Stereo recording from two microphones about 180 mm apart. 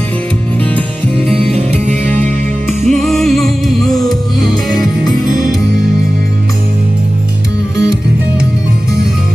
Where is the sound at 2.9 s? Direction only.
Centre (ahead or behind).